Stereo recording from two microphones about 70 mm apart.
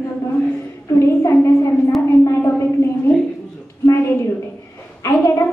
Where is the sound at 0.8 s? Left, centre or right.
Left.